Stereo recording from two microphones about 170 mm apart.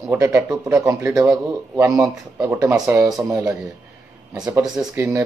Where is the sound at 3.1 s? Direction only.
5° right (ahead or behind).